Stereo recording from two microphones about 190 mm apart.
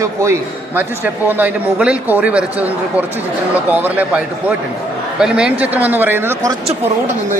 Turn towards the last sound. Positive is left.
turn(degrees=-15)  # may be behind; listen again after turning